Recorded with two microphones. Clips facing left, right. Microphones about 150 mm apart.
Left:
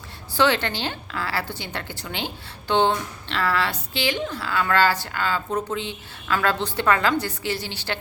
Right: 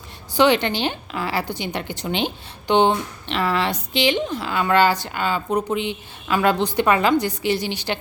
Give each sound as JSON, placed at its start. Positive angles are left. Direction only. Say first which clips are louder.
{"t": 0.3, "sound": "a woman's voice", "louder": "right 4 dB", "side_deg": -15}